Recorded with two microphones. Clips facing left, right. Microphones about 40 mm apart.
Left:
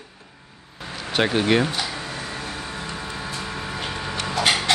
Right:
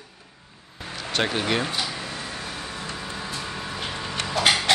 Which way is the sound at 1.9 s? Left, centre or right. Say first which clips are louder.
Left 2 dB; centre.